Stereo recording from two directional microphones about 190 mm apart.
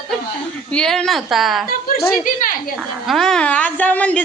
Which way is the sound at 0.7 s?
5° left (ahead or behind).